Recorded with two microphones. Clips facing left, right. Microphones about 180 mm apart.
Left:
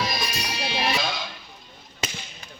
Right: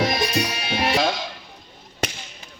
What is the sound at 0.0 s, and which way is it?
Music, 65° right (ahead or behind).